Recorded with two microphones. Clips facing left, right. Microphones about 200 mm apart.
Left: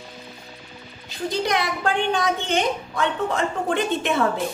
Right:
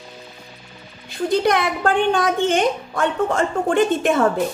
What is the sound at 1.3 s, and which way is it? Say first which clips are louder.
A woman's voice: right 5 dB; 55° right (ahead or behind).